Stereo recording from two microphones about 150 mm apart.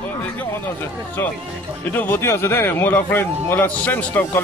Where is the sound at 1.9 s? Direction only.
15° left (ahead or behind).